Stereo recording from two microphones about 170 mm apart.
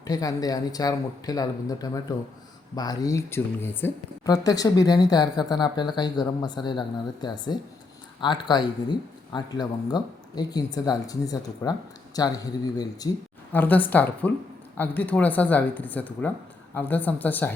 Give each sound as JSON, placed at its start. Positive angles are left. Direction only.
{"t": 0.0, "sound": "speech", "side_deg": 20}
{"t": 13.5, "sound": "a woman's voice", "side_deg": 10}